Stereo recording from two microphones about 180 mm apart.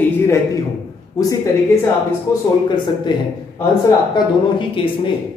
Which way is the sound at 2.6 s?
25° left (ahead or behind).